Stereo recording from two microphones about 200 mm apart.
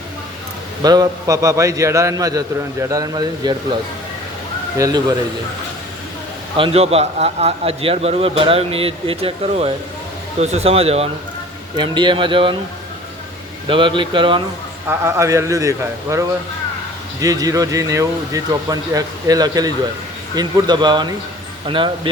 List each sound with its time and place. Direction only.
0.8 s a man's voice: 20° right (ahead or behind)
4.8 s a man's voice: 20° right (ahead or behind)
6.6 s a man's voice: 30° right (ahead or behind)
13.7 s a man's voice: 25° right (ahead or behind)
14.8 s a man's voice: 15° right (ahead or behind)